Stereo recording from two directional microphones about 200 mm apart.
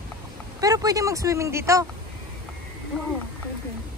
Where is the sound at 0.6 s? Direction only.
20° right (ahead or behind).